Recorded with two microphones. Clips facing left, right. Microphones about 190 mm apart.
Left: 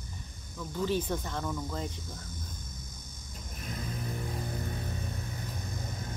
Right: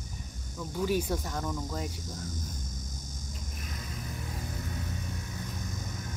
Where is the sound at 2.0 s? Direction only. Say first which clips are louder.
Right 5 dB; 60° left (ahead or behind).